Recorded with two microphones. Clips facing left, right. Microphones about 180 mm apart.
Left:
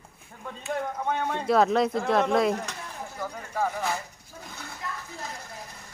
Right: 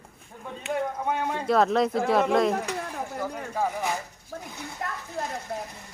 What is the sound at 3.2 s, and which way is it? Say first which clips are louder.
Speech: even; 10° right (ahead or behind).